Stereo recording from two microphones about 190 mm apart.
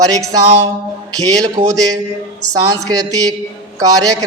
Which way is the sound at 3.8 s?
20° right (ahead or behind).